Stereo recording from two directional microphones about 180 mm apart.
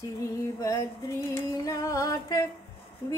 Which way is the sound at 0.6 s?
15° left (ahead or behind).